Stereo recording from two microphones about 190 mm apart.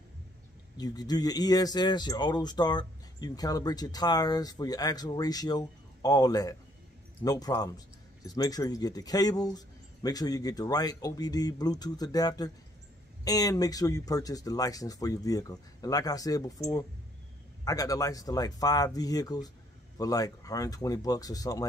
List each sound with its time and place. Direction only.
0.7 s speech: 20° left (ahead or behind)
17.6 s speech: 20° left (ahead or behind)